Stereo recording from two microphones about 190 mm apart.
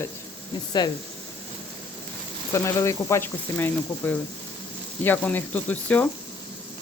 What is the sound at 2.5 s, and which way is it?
Speech, 15° left (ahead or behind).